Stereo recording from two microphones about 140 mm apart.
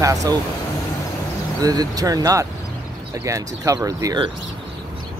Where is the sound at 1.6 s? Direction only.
25° right (ahead or behind).